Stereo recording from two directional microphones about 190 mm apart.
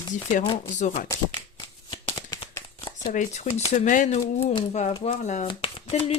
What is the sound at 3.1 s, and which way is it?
Speech, 40° left (ahead or behind).